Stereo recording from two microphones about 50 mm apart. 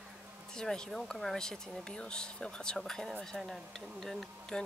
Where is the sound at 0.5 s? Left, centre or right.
Centre.